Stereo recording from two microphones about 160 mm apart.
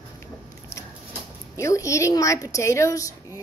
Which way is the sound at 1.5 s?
20° left (ahead or behind).